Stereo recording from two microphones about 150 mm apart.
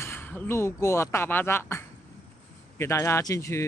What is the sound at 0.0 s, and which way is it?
Speech, 15° left (ahead or behind).